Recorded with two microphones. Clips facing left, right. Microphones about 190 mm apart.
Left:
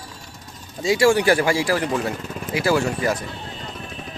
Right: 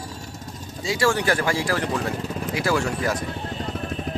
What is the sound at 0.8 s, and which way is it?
Speech, 15° left (ahead or behind).